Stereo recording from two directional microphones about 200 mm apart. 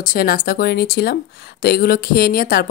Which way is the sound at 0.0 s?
45° left (ahead or behind).